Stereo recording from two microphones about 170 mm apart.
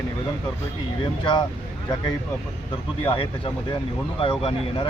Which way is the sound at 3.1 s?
30° left (ahead or behind).